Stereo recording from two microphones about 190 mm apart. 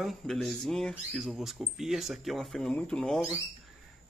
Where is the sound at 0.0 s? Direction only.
Centre (ahead or behind).